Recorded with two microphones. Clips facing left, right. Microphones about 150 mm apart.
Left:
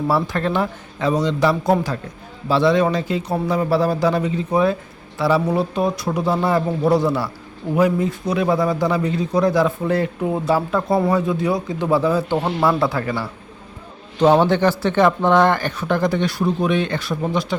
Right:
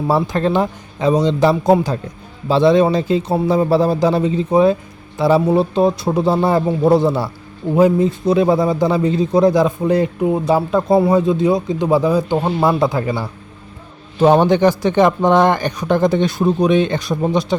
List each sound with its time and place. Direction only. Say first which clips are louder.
0.1 s speech: right 6 dB; 20° right (ahead or behind)